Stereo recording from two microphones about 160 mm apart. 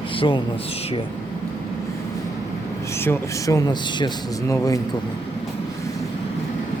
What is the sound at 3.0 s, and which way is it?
Speech, 15° left (ahead or behind).